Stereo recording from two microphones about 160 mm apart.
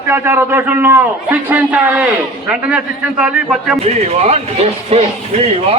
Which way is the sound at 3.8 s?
40° right (ahead or behind).